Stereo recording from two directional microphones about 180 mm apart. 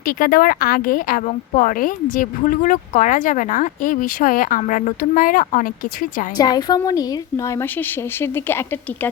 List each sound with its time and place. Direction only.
0.2 s a woman's voice: 50° left (ahead or behind)
6.3 s a woman's voice: 20° left (ahead or behind)